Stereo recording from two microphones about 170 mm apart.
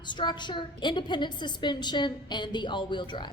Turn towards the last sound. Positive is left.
turn(degrees=25)  # may be behind; listen again after turning